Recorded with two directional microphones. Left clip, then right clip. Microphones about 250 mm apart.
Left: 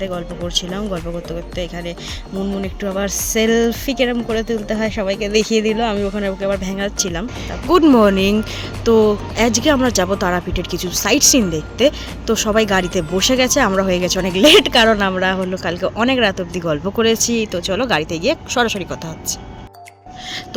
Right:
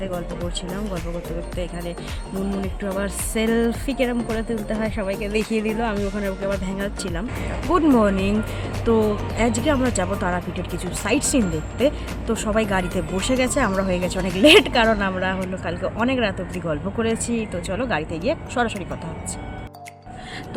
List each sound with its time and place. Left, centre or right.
2.8 s speech: left